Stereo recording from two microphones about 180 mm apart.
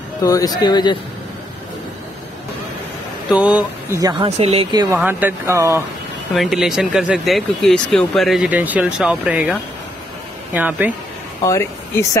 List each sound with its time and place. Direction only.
0.2 s speech: 20° left (ahead or behind)
3.3 s speech: 5° right (ahead or behind)
3.9 s speech: 20° right (ahead or behind)
4.6 s speech: 20° right (ahead or behind)
6.3 s speech: centre (ahead or behind)
11.4 s speech: 15° left (ahead or behind)